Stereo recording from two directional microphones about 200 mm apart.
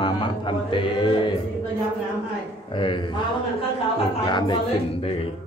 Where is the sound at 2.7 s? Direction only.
25° left (ahead or behind).